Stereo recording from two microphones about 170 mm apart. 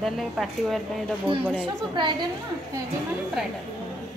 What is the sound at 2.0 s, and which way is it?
Speech, 30° right (ahead or behind).